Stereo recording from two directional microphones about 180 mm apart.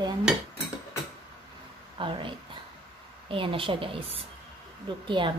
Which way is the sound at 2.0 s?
30° right (ahead or behind).